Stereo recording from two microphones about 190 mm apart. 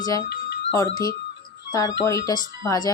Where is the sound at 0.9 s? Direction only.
20° left (ahead or behind).